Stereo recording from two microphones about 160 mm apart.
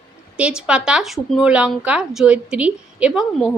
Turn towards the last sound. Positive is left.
turn(degrees=-5)  # may be behind; listen again after turning